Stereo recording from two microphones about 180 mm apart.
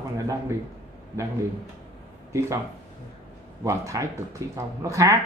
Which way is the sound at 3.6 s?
15° right (ahead or behind).